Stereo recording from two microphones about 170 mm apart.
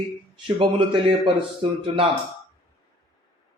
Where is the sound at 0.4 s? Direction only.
30° right (ahead or behind).